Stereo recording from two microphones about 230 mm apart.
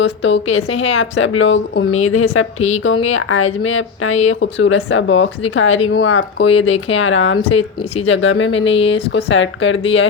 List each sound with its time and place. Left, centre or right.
0.0 s a woman's voice: left
2.0 s a woman's voice: left
2.6 s a woman's voice: left
2.8 s a woman's voice: left